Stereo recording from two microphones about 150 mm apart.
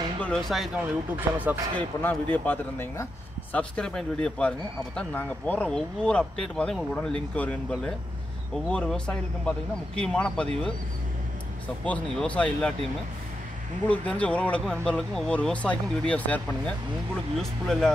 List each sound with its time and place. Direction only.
0.2 s speech: 5° left (ahead or behind)
1.1 s speech: 15° right (ahead or behind)
1.8 s speech: 10° left (ahead or behind)
13.8 s speech: 10° left (ahead or behind)